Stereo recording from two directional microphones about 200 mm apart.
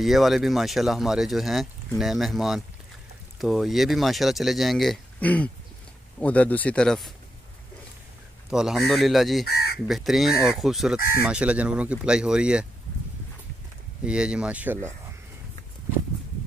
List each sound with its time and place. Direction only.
0.0 s speech: centre (ahead or behind)
8.5 s speech: centre (ahead or behind)
14.0 s speech: 5° right (ahead or behind)